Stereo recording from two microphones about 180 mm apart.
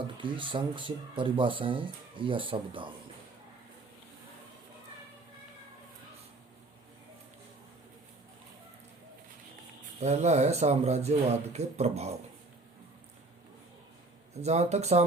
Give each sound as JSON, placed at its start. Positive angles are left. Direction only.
{"t": 0.2, "sound": "speech", "side_deg": -25}
{"t": 10.0, "sound": "speech", "side_deg": -40}
{"t": 14.4, "sound": "speech", "side_deg": -40}